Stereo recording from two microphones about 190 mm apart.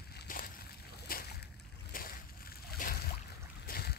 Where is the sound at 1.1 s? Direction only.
50° left (ahead or behind).